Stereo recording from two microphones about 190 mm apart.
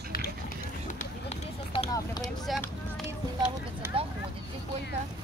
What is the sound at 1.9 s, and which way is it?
Vehicle, 20° left (ahead or behind).